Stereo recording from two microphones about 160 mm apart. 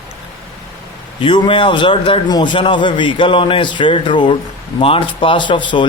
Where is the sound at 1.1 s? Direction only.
30° left (ahead or behind).